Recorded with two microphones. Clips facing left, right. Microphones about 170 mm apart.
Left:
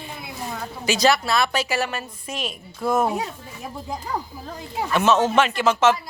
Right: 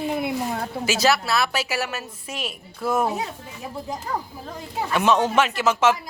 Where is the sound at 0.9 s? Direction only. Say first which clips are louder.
Left 2 dB; 5° right (ahead or behind).